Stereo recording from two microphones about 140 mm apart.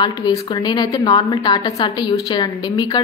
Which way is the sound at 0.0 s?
25° left (ahead or behind).